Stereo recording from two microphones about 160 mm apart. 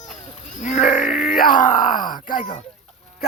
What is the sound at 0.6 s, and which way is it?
Speech, 50° left (ahead or behind).